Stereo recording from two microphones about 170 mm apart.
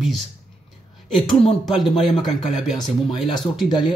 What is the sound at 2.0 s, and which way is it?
Speech, centre (ahead or behind).